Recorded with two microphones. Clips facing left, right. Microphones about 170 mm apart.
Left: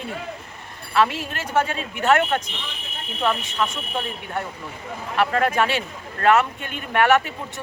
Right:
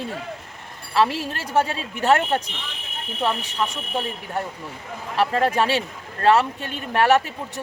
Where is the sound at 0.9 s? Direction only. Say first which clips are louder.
Even; 35° right (ahead or behind).